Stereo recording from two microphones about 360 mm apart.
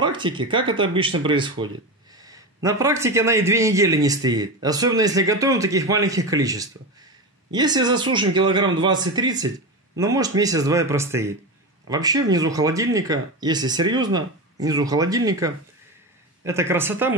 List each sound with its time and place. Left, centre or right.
0.0 s a man's voice: centre